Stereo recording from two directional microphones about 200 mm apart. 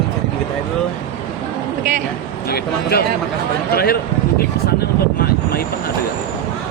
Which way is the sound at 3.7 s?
50° left (ahead or behind).